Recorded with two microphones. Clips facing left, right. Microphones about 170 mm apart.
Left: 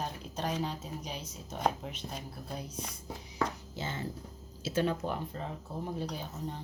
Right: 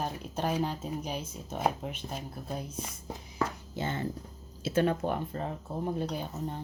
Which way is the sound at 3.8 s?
55° right (ahead or behind).